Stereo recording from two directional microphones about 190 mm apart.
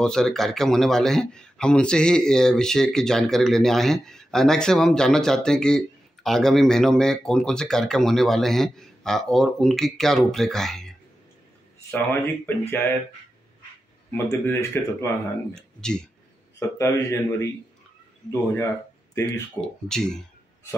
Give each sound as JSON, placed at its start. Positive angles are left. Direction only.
{"t": 0.0, "sound": "speech", "side_deg": 5}
{"t": 14.1, "sound": "speech", "side_deg": 15}
{"t": 15.5, "sound": "speech", "side_deg": 5}
{"t": 16.5, "sound": "speech", "side_deg": 15}
{"t": 19.6, "sound": "speech", "side_deg": 5}